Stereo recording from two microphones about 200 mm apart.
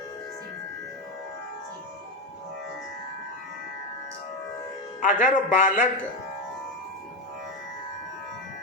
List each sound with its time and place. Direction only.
4.9 s a man's voice: 40° left (ahead or behind)